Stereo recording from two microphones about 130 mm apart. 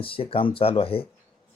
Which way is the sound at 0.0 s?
45° left (ahead or behind).